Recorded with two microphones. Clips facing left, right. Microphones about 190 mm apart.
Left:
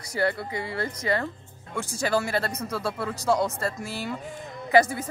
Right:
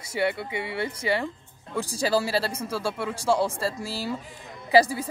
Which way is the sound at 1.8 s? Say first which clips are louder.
Right 1 dB; 35° right (ahead or behind).